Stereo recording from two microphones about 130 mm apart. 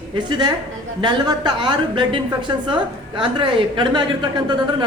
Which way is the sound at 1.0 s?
35° right (ahead or behind).